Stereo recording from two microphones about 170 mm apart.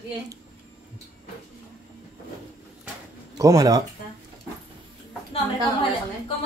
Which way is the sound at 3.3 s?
20° right (ahead or behind).